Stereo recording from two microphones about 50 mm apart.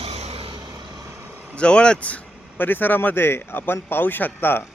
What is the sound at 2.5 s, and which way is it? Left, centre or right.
A man's voice, left.